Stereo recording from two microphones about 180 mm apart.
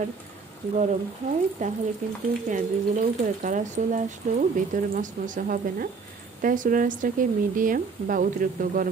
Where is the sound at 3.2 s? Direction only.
45° right (ahead or behind).